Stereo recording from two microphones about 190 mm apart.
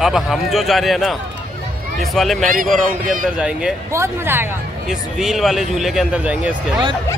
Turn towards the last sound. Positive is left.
turn(degrees=-5)  # may be behind; listen again after turning